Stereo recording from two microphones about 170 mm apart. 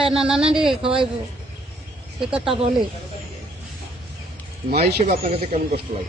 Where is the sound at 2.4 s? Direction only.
35° right (ahead or behind).